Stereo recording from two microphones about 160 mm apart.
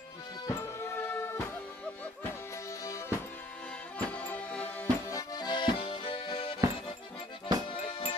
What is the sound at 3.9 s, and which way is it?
Music, 10° left (ahead or behind).